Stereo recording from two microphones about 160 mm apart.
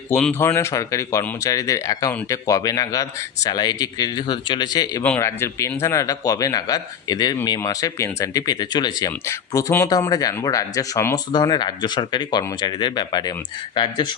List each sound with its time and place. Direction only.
0.1 s speech: 10° left (ahead or behind)
5.0 s speech: 15° left (ahead or behind)